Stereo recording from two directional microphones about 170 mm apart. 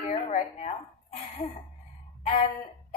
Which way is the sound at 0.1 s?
45° left (ahead or behind).